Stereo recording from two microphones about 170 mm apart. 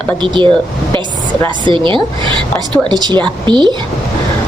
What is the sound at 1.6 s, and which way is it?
A woman's voice, 30° right (ahead or behind).